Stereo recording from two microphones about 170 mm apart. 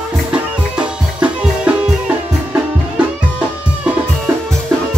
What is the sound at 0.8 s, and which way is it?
Music, 5° right (ahead or behind).